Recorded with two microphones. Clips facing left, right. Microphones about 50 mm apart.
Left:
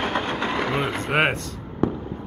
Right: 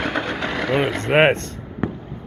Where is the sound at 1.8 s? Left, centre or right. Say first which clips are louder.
Left 3 dB; centre.